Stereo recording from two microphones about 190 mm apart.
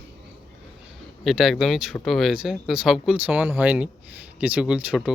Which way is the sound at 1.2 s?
Centre (ahead or behind).